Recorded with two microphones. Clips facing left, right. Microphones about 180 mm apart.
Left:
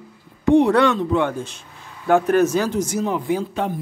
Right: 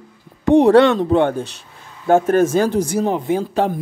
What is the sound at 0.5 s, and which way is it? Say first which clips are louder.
Speech: right 5 dB; 40° right (ahead or behind).